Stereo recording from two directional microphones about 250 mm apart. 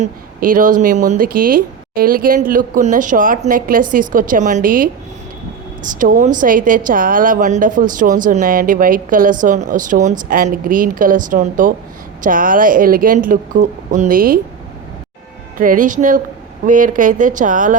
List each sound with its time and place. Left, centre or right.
0.0 s a woman's voice: right
6.0 s a woman's voice: right
15.5 s a woman's voice: right